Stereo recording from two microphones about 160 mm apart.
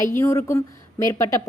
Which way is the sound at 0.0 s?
15° left (ahead or behind).